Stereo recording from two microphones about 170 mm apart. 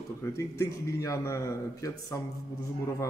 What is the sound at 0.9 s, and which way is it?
A man's voice, 15° left (ahead or behind).